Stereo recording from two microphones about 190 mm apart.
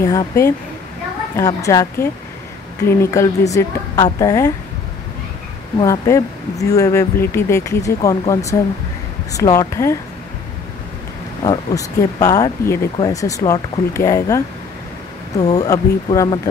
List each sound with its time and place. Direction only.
0.0 s speech: 15° left (ahead or behind)
5.8 s speech: 15° left (ahead or behind)
11.4 s speech: 20° left (ahead or behind)